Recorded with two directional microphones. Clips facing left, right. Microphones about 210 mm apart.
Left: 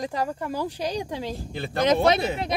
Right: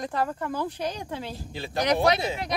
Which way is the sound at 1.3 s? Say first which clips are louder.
Left 3 dB; 55° left (ahead or behind).